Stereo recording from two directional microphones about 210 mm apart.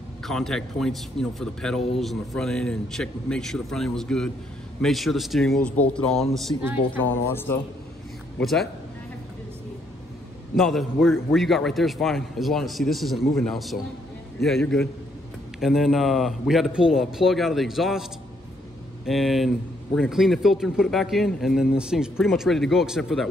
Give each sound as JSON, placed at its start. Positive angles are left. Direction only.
{"t": 0.2, "sound": "a man's voice", "side_deg": 0}
{"t": 6.5, "sound": "a man's voice", "side_deg": 15}
{"t": 10.5, "sound": "a man's voice", "side_deg": 0}
{"t": 19.0, "sound": "a man's voice", "side_deg": 0}